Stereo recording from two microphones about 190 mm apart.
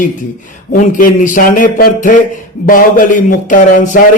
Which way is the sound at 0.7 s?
45° left (ahead or behind).